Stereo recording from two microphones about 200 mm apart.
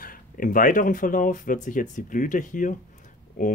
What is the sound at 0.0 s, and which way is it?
Speech, 45° left (ahead or behind).